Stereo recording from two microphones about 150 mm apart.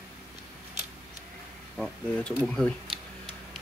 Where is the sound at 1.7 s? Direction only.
5° left (ahead or behind).